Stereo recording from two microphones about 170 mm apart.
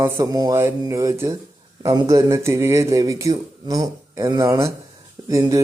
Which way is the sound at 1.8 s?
20° right (ahead or behind).